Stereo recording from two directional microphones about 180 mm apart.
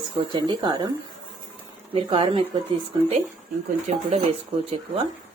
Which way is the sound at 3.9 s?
40° right (ahead or behind).